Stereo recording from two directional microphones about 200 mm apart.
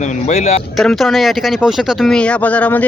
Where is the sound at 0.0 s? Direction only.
35° left (ahead or behind).